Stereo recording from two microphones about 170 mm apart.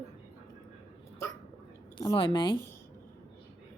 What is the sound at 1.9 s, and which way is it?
Speech, 25° left (ahead or behind).